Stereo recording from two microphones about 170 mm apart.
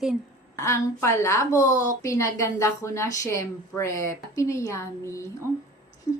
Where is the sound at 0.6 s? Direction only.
15° left (ahead or behind).